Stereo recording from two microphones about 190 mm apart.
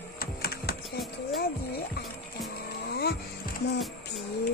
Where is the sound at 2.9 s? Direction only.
55° left (ahead or behind).